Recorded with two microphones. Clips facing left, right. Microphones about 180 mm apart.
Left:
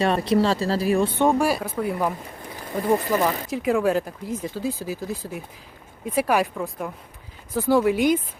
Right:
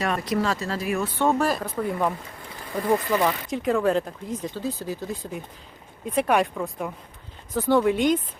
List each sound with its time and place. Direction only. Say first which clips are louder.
0.0 s speech: left 5 dB; 30° left (ahead or behind)
1.2 s speech: left 2 dB; 15° left (ahead or behind)